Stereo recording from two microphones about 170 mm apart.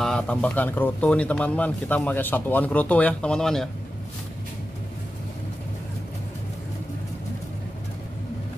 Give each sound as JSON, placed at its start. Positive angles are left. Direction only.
{"t": 0.0, "sound": "speech", "side_deg": 5}